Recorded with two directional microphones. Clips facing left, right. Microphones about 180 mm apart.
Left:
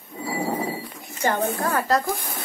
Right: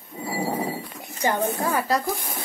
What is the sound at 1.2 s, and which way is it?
Speech, 10° right (ahead or behind).